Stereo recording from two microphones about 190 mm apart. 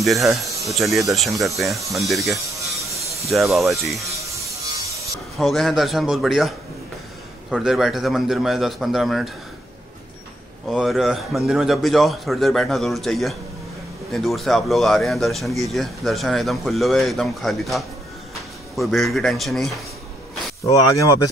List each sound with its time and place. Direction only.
0.0 s a man's voice: centre (ahead or behind)
4.0 s music: 15° right (ahead or behind)
5.4 s a man's voice: centre (ahead or behind)
7.5 s a man's voice: centre (ahead or behind)
10.7 s a man's voice: centre (ahead or behind)
20.6 s speech: 15° left (ahead or behind)